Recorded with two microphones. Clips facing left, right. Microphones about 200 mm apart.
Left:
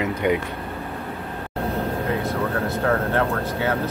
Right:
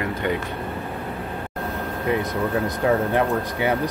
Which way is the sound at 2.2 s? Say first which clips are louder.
Right 1 dB; 15° right (ahead or behind).